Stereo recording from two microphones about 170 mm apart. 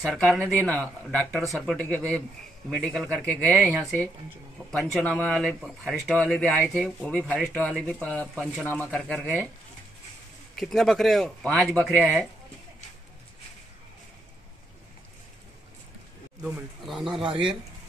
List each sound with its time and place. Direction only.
0.0 s speech: centre (ahead or behind)
9.0 s speech: centre (ahead or behind)
10.5 s speech: centre (ahead or behind)
16.8 s speech: centre (ahead or behind)
17.2 s speech: 30° right (ahead or behind)